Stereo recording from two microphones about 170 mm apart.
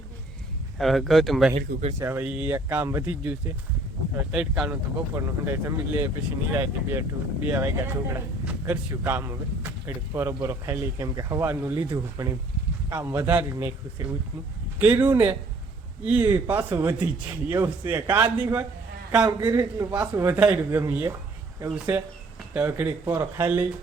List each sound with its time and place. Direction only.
0.8 s speech: centre (ahead or behind)
1.5 s speech: 40° right (ahead or behind)
2.0 s speech: 15° right (ahead or behind)
14.8 s speech: 10° right (ahead or behind)
19.4 s a man's voice: 20° right (ahead or behind)